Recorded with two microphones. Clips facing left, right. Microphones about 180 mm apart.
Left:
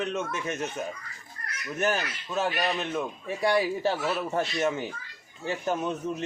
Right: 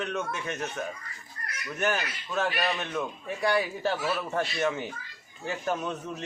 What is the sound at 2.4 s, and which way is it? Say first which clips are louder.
Speech: left 1 dB; 15° left (ahead or behind).